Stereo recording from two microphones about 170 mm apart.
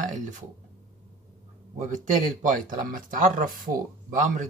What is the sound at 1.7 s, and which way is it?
Speech, 45° right (ahead or behind).